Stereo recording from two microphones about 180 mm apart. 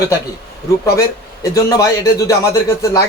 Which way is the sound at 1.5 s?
20° left (ahead or behind).